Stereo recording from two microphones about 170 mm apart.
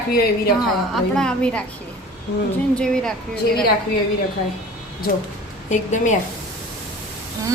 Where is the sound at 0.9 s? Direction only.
5° left (ahead or behind).